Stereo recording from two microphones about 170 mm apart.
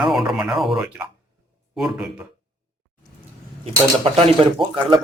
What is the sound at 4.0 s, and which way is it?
Speech, 30° right (ahead or behind).